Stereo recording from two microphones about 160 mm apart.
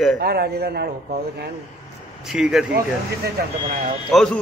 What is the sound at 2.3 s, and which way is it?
Speech, 5° right (ahead or behind).